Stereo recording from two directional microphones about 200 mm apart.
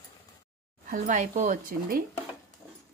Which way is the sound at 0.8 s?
40° right (ahead or behind).